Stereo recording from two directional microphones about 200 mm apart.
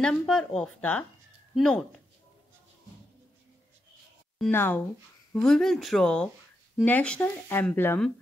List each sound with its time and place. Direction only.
0.0 s speech: 5° left (ahead or behind)
4.5 s speech: 10° left (ahead or behind)